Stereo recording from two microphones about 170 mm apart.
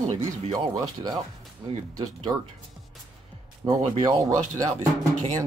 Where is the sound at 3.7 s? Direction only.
30° right (ahead or behind).